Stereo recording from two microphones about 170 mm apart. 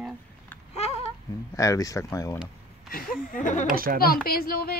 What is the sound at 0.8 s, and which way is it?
Babbling, 35° left (ahead or behind).